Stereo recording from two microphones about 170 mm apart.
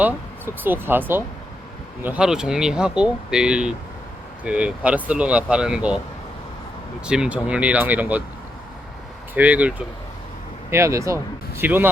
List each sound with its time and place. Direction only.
0.0 s speech: 10° right (ahead or behind)
7.0 s speech: 5° right (ahead or behind)
9.3 s speech: 10° right (ahead or behind)